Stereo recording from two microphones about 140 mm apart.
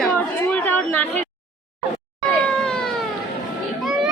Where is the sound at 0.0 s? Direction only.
10° left (ahead or behind).